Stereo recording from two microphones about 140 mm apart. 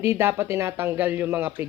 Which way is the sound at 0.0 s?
20° right (ahead or behind).